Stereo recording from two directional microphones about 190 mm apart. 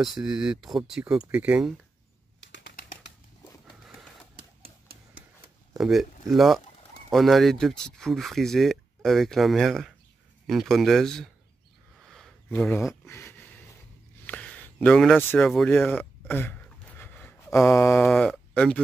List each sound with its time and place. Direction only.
0.0 s speech: centre (ahead or behind)
2.4 s bird: 70° left (ahead or behind)
5.8 s speech: centre (ahead or behind)
12.1 s a sound: 5° left (ahead or behind)
18.0 s speech: centre (ahead or behind)